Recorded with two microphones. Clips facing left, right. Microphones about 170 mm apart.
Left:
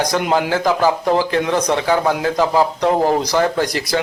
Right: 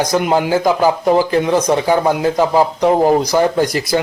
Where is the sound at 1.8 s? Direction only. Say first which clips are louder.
Right 3 dB; 15° right (ahead or behind).